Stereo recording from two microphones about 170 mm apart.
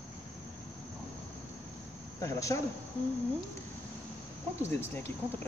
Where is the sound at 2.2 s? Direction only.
20° left (ahead or behind).